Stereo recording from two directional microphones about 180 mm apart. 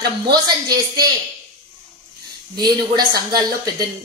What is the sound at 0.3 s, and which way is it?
Speech, 25° right (ahead or behind).